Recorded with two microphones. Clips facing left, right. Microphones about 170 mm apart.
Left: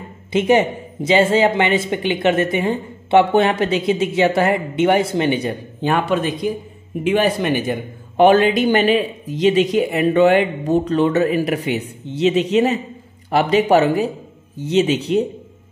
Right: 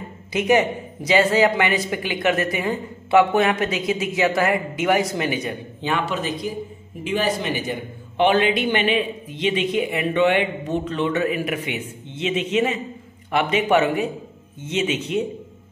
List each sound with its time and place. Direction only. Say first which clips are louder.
0.3 s speech: left 3 dB; 25° left (ahead or behind)
5.8 s speech: left 6 dB; 50° left (ahead or behind)
8.2 s speech: left 6 dB; 45° left (ahead or behind)